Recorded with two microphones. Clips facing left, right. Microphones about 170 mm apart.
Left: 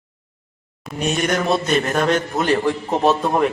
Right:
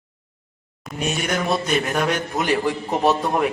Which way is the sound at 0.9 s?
5° right (ahead or behind).